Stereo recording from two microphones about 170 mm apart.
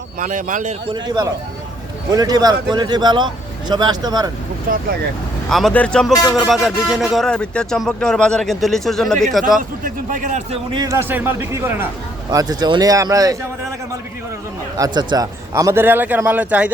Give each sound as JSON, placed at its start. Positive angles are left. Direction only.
{"t": 0.2, "sound": "a man's voice", "side_deg": -45}
{"t": 0.9, "sound": "speech", "side_deg": -20}
{"t": 4.7, "sound": "speech", "side_deg": -55}
{"t": 5.5, "sound": "speech", "side_deg": 0}
{"t": 9.6, "sound": "a man's voice", "side_deg": -50}
{"t": 10.7, "sound": "speech", "side_deg": -20}
{"t": 14.8, "sound": "speech", "side_deg": -25}